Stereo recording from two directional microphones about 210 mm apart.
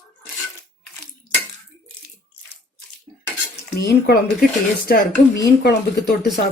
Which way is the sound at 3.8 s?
50° left (ahead or behind).